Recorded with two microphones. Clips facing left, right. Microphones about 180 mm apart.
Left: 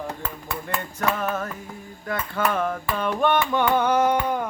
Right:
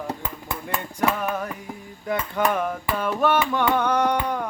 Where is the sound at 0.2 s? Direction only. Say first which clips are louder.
Even; 15° right (ahead or behind).